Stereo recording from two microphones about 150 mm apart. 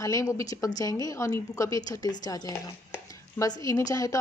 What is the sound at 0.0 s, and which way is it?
Speech, 20° left (ahead or behind).